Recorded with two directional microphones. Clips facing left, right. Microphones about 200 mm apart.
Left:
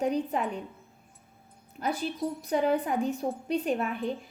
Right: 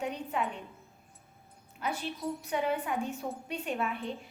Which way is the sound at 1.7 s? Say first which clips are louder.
Left 5 dB; 35° left (ahead or behind).